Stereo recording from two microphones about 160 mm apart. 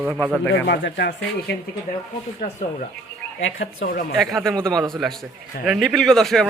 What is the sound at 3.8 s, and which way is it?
Speech, 65° left (ahead or behind).